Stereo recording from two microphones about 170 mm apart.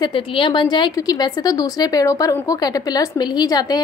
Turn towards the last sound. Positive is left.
turn(degrees=25)  # may be behind; listen again after turning